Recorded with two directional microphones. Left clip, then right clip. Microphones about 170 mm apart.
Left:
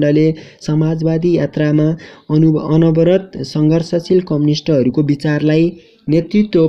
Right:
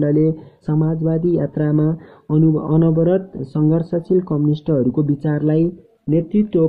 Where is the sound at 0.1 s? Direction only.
20° left (ahead or behind).